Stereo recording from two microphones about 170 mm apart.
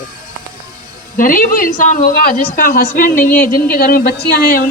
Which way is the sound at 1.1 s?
55° left (ahead or behind).